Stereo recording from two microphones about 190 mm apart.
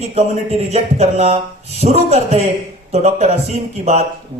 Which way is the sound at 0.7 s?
35° right (ahead or behind).